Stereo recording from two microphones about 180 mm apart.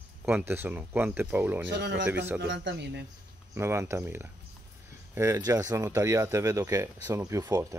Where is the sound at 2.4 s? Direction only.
85° right.